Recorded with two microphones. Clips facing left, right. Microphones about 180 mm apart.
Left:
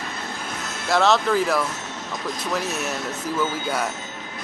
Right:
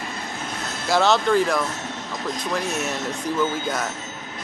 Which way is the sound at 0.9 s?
Centre (ahead or behind).